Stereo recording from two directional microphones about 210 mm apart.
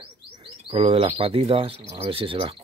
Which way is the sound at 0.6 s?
25° right (ahead or behind).